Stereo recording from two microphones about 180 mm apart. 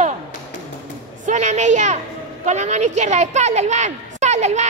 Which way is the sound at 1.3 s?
40° right (ahead or behind).